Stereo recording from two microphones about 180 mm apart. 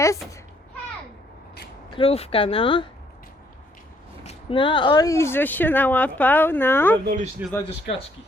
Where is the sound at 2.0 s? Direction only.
30° left (ahead or behind).